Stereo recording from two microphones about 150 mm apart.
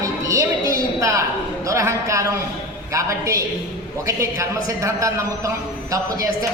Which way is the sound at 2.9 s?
20° right (ahead or behind).